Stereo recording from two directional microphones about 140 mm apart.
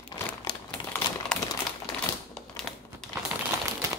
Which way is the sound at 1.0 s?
35° left (ahead or behind).